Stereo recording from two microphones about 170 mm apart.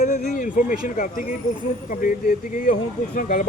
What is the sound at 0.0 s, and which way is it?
Speech, 50° left (ahead or behind).